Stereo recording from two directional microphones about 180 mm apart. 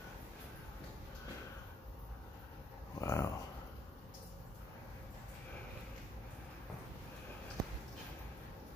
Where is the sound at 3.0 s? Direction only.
15° left (ahead or behind).